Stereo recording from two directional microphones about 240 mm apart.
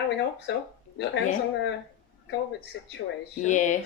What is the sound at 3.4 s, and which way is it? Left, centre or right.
Speech, left.